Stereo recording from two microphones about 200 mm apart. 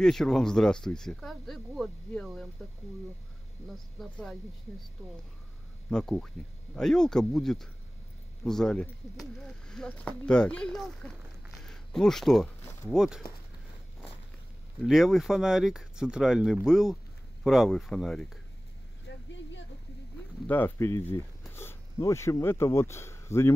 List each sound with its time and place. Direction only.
0.0 s speech: centre (ahead or behind)
4.0 s speech: 5° left (ahead or behind)
5.9 s speech: 5° left (ahead or behind)
14.8 s speech: centre (ahead or behind)
19.0 s vehicle: 65° left (ahead or behind)
20.4 s speech: 10° left (ahead or behind)